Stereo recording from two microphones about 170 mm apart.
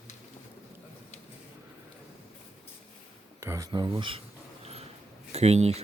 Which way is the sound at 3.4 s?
15° right (ahead or behind).